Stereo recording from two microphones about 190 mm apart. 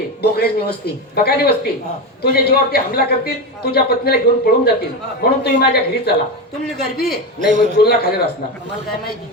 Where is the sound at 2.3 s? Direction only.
55° left (ahead or behind).